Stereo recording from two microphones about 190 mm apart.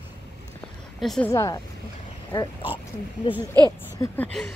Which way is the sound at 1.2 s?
15° left (ahead or behind).